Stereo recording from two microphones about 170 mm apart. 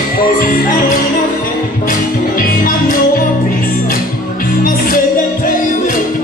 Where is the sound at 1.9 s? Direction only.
55° left (ahead or behind).